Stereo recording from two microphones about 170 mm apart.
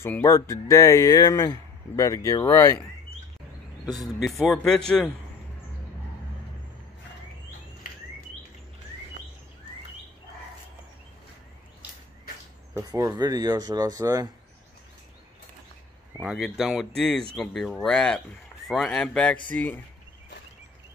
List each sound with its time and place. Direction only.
0.0 s speech: 15° left (ahead or behind)
4.2 s speech: centre (ahead or behind)
12.7 s speech: 20° right (ahead or behind)
16.2 s speech: 5° right (ahead or behind)